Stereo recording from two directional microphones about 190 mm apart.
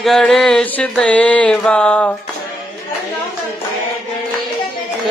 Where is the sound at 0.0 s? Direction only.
Centre (ahead or behind).